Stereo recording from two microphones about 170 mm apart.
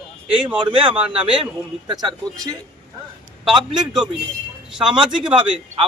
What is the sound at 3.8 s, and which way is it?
Speech, 5° right (ahead or behind).